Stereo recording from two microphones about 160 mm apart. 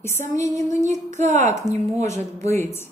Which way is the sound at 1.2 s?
50° right (ahead or behind).